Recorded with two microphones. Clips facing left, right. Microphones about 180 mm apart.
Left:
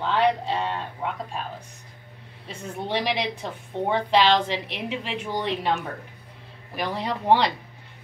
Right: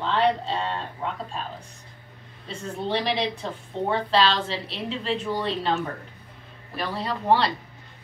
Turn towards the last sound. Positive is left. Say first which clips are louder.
# left 1 dB
turn(degrees=15)  # may be behind; listen again after turning